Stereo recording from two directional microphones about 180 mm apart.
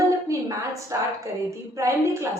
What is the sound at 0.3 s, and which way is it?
A woman's voice, 20° right (ahead or behind).